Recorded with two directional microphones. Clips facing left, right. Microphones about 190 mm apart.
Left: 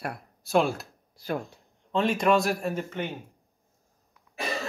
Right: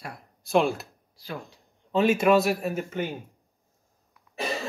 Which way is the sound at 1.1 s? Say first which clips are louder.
Left 6 dB; 50° left (ahead or behind).